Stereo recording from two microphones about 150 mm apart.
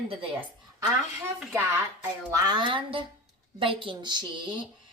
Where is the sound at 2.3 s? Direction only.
25° right (ahead or behind).